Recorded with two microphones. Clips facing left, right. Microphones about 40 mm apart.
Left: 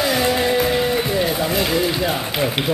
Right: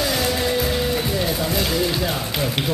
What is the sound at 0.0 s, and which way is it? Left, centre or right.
Music, centre.